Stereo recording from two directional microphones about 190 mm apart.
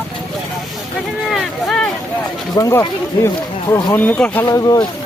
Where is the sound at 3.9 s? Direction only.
10° left (ahead or behind).